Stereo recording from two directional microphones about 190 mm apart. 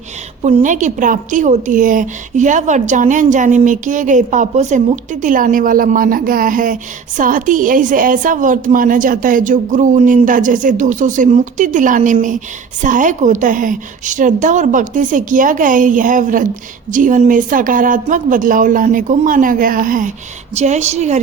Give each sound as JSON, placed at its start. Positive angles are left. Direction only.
{"t": 0.4, "sound": "a woman's voice", "side_deg": -40}